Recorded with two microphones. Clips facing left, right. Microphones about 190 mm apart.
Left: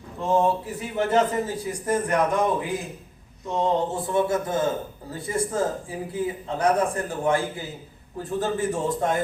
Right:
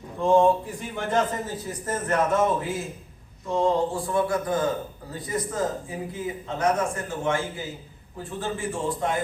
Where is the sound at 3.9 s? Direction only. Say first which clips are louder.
Left 1 dB; 20° left (ahead or behind).